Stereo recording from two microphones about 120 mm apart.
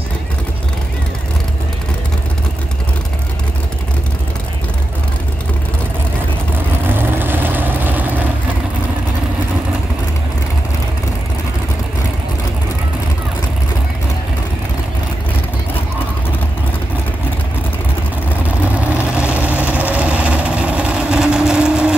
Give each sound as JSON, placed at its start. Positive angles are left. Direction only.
{"t": 6.9, "sound": "vehicle", "side_deg": -15}
{"t": 18.7, "sound": "vehicle", "side_deg": -10}